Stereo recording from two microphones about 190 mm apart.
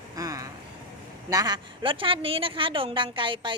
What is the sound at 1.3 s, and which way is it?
A woman's voice, 20° right (ahead or behind).